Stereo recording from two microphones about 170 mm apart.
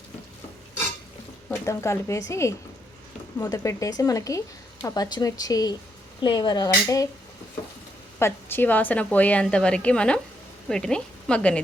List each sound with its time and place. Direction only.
1.5 s a woman's voice: 15° left (ahead or behind)
8.2 s a woman's voice: 10° left (ahead or behind)